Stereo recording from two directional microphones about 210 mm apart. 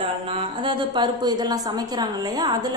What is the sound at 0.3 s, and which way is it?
A woman's voice, 25° right (ahead or behind).